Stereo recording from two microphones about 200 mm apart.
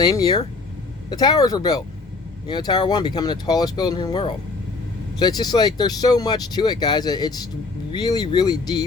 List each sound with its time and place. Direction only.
0.0 s speech: 20° left (ahead or behind)